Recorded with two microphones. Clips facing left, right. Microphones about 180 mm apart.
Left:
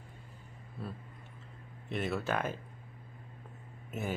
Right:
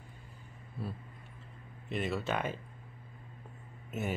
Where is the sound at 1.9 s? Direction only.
Centre (ahead or behind).